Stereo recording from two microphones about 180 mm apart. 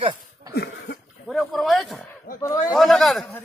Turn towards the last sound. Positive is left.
turn(degrees=0)  # may be behind; listen again after turning